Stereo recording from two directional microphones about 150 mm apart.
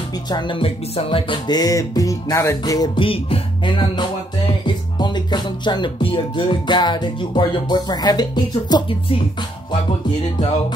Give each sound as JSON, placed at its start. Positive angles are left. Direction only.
{"t": 0.3, "sound": "music", "side_deg": 30}